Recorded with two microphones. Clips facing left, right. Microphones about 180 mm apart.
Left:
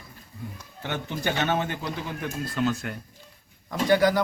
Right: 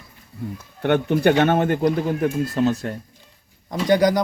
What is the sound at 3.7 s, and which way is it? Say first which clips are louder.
Speech: right 3 dB; 20° right (ahead or behind).